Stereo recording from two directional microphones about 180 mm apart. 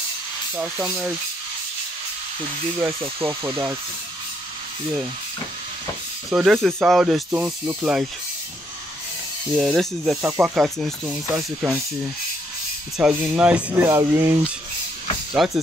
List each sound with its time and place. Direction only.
0.6 s speech: 5° right (ahead or behind)
3.3 s speech: 20° right (ahead or behind)
6.3 s speech: centre (ahead or behind)
9.6 s speech: centre (ahead or behind)
12.9 s speech: 5° right (ahead or behind)
15.3 s speech: centre (ahead or behind)